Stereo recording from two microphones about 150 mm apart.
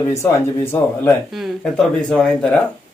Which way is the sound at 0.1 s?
20° left (ahead or behind).